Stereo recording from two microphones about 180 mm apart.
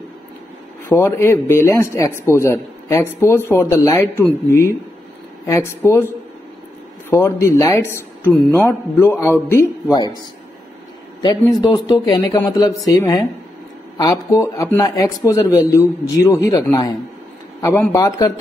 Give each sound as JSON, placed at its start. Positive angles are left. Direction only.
{"t": 0.8, "sound": "a man's voice", "side_deg": 15}
{"t": 11.6, "sound": "speech", "side_deg": 25}